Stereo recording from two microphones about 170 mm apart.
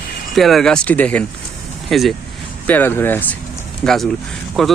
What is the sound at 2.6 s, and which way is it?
Speech, 10° left (ahead or behind).